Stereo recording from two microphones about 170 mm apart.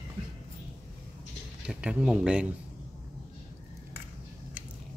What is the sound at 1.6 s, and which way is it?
Speech, 5° right (ahead or behind).